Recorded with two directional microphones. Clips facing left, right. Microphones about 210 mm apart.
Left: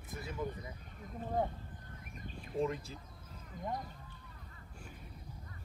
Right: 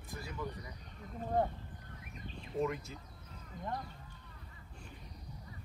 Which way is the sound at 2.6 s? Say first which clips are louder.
Even; 30° left (ahead or behind).